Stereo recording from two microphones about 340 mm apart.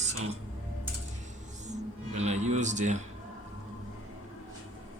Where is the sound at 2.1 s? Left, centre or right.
Centre.